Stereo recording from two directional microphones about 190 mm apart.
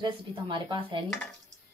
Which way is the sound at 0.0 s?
25° right (ahead or behind).